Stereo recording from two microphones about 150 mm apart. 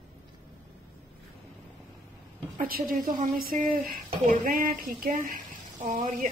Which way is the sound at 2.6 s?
75° right (ahead or behind).